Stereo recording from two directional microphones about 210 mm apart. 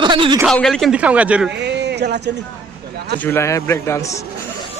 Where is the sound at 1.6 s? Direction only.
55° right (ahead or behind).